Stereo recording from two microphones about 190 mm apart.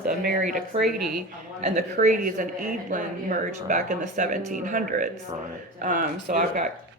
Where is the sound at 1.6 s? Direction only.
40° right (ahead or behind).